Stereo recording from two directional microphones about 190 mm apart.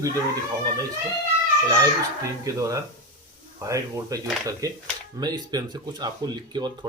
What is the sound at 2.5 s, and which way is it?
Speech, 15° right (ahead or behind).